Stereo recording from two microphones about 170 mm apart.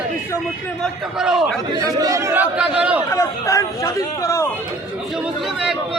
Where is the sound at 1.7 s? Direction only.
20° right (ahead or behind).